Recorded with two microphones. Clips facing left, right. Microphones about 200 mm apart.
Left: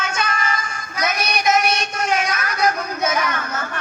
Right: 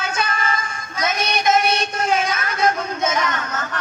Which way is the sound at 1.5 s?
30° right (ahead or behind).